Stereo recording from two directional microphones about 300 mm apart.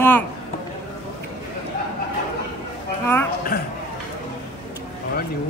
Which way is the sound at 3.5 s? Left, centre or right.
Left.